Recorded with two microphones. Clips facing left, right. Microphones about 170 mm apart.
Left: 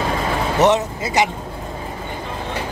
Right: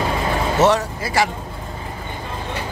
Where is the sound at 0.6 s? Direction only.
20° left (ahead or behind).